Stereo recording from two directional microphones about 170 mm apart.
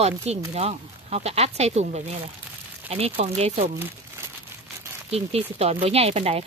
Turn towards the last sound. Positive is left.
turn(degrees=-35)  # may be behind; listen again after turning